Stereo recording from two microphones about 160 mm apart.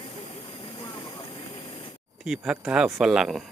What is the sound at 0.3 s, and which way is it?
Vehicle, 35° left (ahead or behind).